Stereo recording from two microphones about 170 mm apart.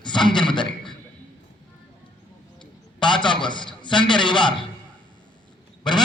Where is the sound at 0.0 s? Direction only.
25° left (ahead or behind).